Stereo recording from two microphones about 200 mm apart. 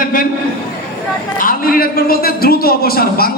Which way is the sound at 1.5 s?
45° left (ahead or behind).